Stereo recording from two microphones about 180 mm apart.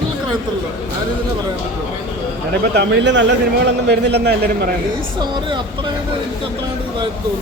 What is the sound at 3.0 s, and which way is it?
Speech, 80° right.